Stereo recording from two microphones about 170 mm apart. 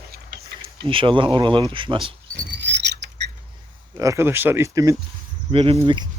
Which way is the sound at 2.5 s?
90° right.